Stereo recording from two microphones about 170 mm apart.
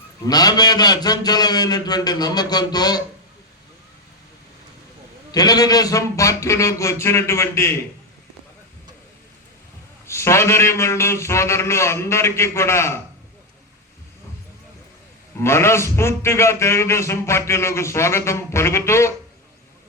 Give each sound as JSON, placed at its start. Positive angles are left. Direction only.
{"t": 0.3, "sound": "a man's voice", "side_deg": 25}
{"t": 5.3, "sound": "a man's voice", "side_deg": 20}
{"t": 10.1, "sound": "a man's voice", "side_deg": 15}
{"t": 15.4, "sound": "a man's voice", "side_deg": 15}